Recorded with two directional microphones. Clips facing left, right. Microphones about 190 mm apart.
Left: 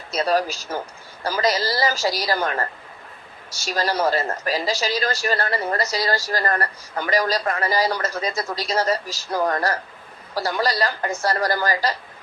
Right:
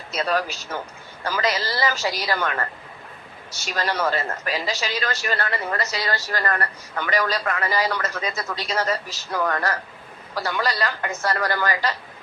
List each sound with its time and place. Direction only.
0.1 s speech: 40° left (ahead or behind)
3.7 s speech: 35° left (ahead or behind)